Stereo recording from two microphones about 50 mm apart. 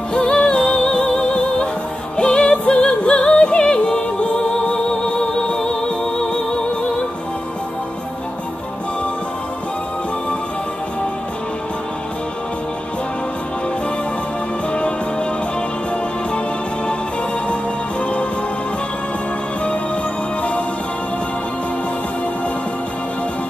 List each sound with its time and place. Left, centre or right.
0.1 s music: centre
14.7 s music: left